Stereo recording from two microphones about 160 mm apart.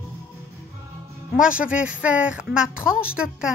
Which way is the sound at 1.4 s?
5° right (ahead or behind).